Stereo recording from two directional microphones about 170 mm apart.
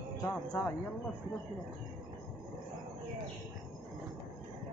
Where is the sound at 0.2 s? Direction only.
20° left (ahead or behind).